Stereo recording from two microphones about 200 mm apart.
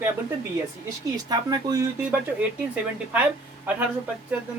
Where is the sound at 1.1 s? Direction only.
20° right (ahead or behind).